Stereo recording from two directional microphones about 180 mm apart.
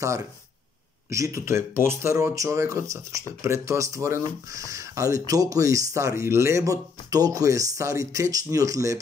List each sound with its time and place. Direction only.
1.1 s speech: 15° right (ahead or behind)